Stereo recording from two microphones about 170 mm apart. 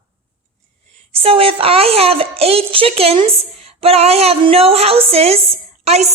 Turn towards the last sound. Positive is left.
turn(degrees=-40)  # may be behind; listen again after turning